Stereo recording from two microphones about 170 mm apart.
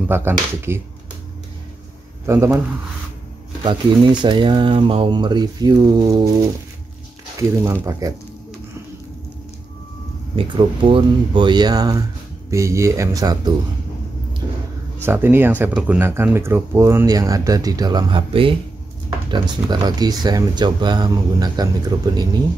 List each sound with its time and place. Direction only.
0.1 s speech: 15° right (ahead or behind)
2.2 s speech: 15° right (ahead or behind)
3.6 s speech: 25° right (ahead or behind)
8.0 s speech: 20° right (ahead or behind)
10.3 s speech: 30° right (ahead or behind)
15.0 s speech: 15° right (ahead or behind)